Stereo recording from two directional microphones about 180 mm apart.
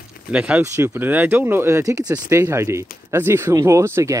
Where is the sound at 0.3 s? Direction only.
5° right (ahead or behind).